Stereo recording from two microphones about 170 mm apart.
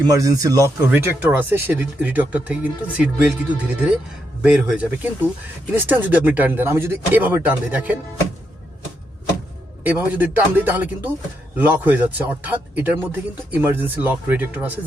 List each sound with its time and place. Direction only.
0.1 s speech: 20° right (ahead or behind)
4.4 s speech: 5° right (ahead or behind)
9.8 s speech: 10° right (ahead or behind)